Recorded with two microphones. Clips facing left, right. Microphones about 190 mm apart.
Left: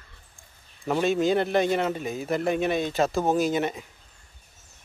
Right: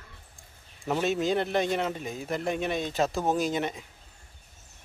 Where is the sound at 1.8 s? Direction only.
60° left (ahead or behind).